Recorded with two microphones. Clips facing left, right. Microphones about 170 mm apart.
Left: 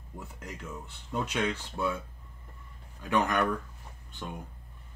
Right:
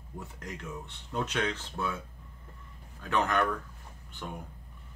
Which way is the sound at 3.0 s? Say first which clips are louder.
Left 1 dB; 15° left (ahead or behind).